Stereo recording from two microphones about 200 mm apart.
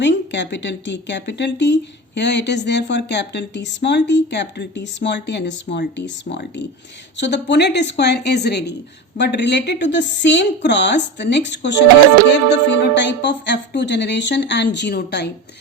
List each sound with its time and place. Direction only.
0.0 s speech: 65° left (ahead or behind)